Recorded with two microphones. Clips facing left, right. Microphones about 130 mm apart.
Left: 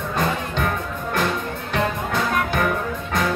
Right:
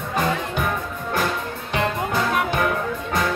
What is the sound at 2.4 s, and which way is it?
Music, 5° right (ahead or behind).